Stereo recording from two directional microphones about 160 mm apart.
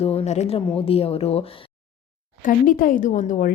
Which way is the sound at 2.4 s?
60° left (ahead or behind).